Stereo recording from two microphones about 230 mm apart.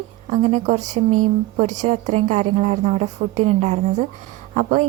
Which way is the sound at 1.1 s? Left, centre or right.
Right.